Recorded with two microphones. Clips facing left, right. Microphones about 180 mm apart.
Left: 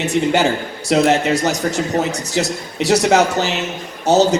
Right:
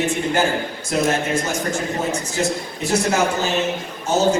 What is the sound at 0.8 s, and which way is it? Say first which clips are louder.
A man's voice: left 7 dB; 75° left (ahead or behind).